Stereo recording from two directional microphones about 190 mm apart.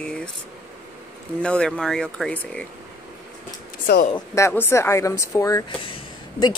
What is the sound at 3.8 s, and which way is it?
Speech, 50° left (ahead or behind).